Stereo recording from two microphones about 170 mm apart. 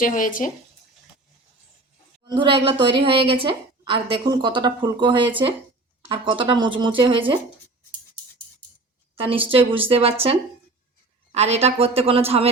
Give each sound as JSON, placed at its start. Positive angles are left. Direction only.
{"t": 0.0, "sound": "a woman's voice", "side_deg": 50}
{"t": 2.2, "sound": "a woman's voice", "side_deg": -30}
{"t": 9.2, "sound": "a woman's voice", "side_deg": -30}